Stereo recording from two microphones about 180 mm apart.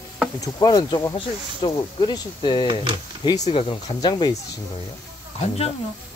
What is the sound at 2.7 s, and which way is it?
Speech, 25° right (ahead or behind).